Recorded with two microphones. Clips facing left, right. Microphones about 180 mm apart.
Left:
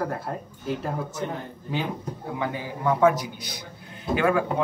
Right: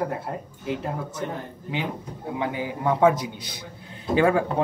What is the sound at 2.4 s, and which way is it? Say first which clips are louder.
Speech: right 3 dB; 20° right (ahead or behind).